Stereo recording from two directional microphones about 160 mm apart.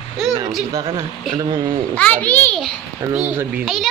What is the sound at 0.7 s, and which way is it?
Speech, 25° right (ahead or behind).